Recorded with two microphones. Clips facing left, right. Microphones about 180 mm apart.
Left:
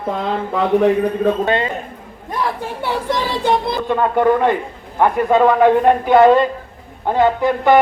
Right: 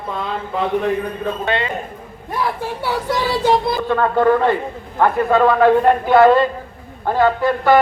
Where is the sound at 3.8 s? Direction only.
15° left (ahead or behind).